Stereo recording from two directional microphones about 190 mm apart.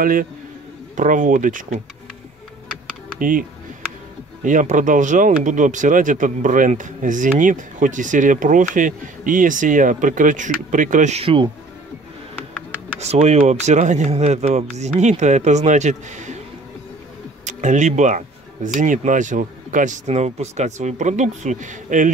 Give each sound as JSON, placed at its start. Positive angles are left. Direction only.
{"t": 0.0, "sound": "speech", "side_deg": -45}
{"t": 3.2, "sound": "speech", "side_deg": -45}
{"t": 13.0, "sound": "speech", "side_deg": -35}
{"t": 17.5, "sound": "speech", "side_deg": -40}